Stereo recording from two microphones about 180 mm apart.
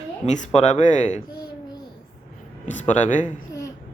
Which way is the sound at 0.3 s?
40° left (ahead or behind).